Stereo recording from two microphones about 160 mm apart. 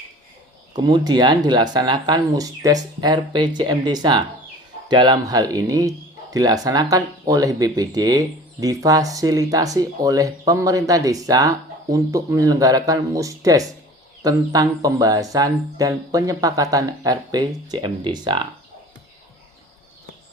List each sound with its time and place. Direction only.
0.8 s speech: 25° right (ahead or behind)